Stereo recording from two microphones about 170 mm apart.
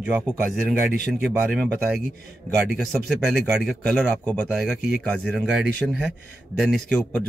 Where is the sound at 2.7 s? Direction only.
Centre (ahead or behind).